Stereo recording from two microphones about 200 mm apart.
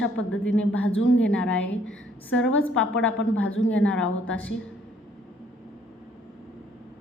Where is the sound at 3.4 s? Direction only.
75° left (ahead or behind).